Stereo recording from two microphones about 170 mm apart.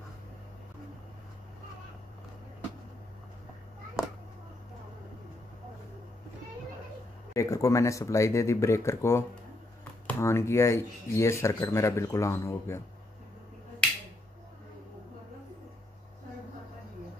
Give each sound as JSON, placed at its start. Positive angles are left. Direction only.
{"t": 7.3, "sound": "speech", "side_deg": 20}